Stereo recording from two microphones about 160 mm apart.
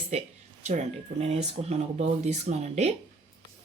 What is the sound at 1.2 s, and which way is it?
Speech, 45° right (ahead or behind).